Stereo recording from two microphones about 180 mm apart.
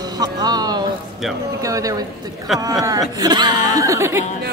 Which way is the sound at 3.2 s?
25° right (ahead or behind).